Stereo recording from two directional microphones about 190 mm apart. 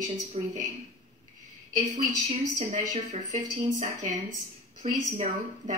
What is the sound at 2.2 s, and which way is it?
Speech, 35° right (ahead or behind).